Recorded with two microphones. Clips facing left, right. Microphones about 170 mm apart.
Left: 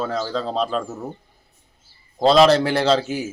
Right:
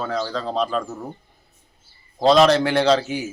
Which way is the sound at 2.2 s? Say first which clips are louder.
Left 1 dB; centre (ahead or behind).